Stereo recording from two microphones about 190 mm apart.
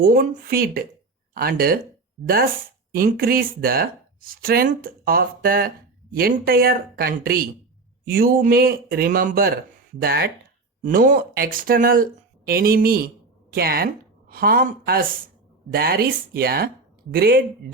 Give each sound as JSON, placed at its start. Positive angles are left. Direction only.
{"t": 0.0, "sound": "a woman's voice", "side_deg": -50}